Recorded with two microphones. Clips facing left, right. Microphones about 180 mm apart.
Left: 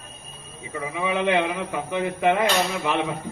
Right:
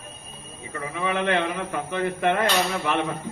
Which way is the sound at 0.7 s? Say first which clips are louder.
Left 1 dB; 10° left (ahead or behind).